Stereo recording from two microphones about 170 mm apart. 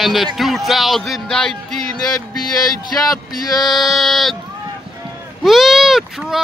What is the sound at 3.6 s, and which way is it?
Speech, centre (ahead or behind).